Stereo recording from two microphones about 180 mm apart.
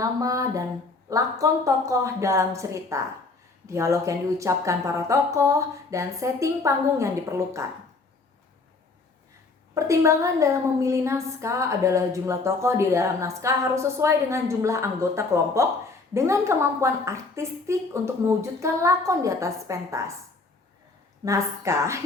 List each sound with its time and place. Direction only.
0.0 s a woman's voice: 20° right (ahead or behind)
9.7 s a woman's voice: 15° right (ahead or behind)
21.2 s a woman's voice: 15° right (ahead or behind)